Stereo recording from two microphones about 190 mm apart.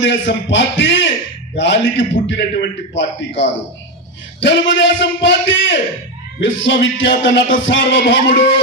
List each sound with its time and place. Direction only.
0.0 s music: 75° left (ahead or behind)